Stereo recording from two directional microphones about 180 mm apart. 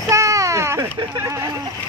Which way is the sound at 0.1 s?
15° right (ahead or behind).